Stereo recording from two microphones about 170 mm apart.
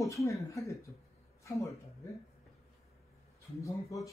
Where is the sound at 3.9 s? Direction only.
20° left (ahead or behind).